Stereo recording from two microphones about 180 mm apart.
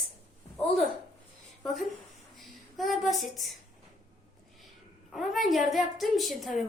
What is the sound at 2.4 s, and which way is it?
Speech, centre (ahead or behind).